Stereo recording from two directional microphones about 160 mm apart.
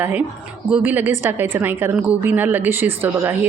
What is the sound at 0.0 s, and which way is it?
A woman's voice, 10° right (ahead or behind).